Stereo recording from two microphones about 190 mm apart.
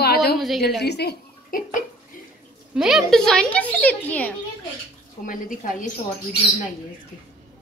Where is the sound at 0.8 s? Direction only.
60° left (ahead or behind).